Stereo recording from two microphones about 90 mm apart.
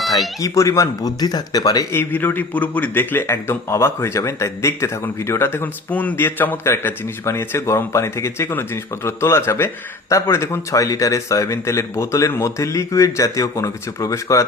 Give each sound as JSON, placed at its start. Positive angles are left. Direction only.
{"t": 0.3, "sound": "a man's voice", "side_deg": 40}
{"t": 1.9, "sound": "a man's voice", "side_deg": 25}